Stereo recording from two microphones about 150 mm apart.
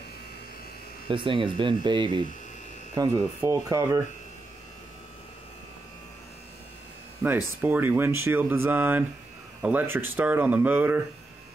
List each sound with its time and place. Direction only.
1.0 s speech: 35° right (ahead or behind)
7.6 s speech: 10° right (ahead or behind)